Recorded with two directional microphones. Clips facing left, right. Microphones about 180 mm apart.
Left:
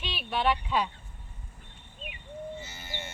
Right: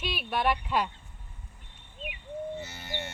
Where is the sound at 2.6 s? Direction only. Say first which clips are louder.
Right 4 dB; 65° right (ahead or behind).